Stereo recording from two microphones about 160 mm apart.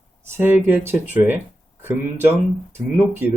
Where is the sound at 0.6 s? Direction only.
10° right (ahead or behind).